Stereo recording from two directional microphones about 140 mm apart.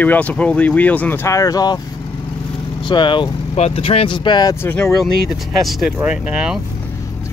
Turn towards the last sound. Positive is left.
turn(degrees=-5)  # may be behind; listen again after turning